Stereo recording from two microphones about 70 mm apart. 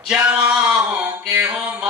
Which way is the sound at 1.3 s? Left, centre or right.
Centre.